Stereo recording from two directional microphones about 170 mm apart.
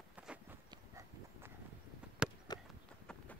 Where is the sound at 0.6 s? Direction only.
20° right (ahead or behind).